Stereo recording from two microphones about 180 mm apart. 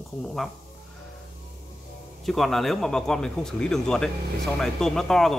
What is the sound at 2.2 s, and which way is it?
A man's voice, centre (ahead or behind).